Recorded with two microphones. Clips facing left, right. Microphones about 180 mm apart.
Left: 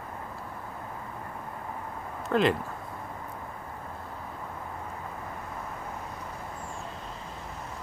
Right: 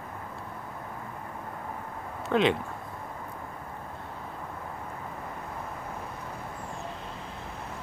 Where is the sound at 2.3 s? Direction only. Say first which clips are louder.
Even; centre (ahead or behind).